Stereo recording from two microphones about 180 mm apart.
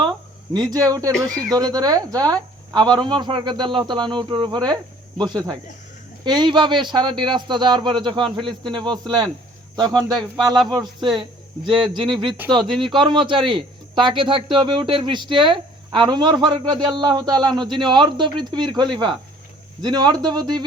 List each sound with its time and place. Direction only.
0.5 s speech: 20° right (ahead or behind)
1.1 s speech: 5° left (ahead or behind)
1.5 s speech: 20° right (ahead or behind)